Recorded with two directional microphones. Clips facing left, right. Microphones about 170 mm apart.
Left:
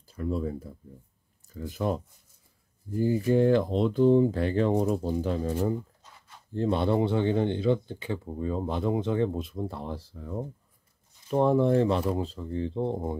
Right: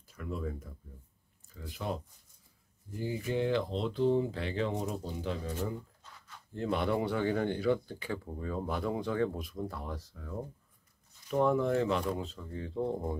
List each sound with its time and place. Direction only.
0.0 s speech: 30° left (ahead or behind)
1.5 s speech: 45° left (ahead or behind)
3.0 s speech: 40° left (ahead or behind)
6.5 s speech: 30° left (ahead or behind)